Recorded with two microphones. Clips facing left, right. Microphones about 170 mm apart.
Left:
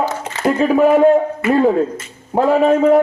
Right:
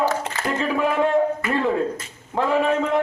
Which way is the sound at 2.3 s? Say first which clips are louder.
Left 7 dB; 40° left (ahead or behind).